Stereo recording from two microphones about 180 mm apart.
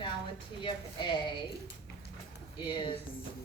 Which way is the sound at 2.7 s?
25° left (ahead or behind).